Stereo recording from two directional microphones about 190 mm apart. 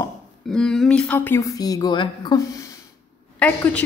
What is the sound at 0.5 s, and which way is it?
A woman's voice, 5° left (ahead or behind).